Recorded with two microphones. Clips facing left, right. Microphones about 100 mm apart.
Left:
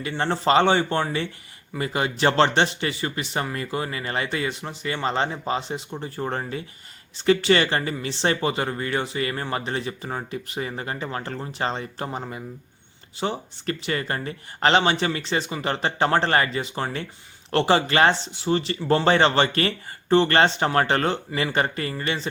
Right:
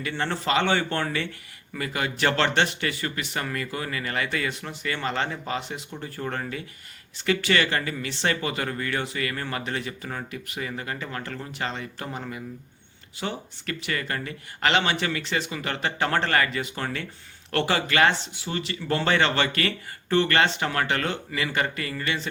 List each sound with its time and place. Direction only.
0.0 s speech: 30° left (ahead or behind)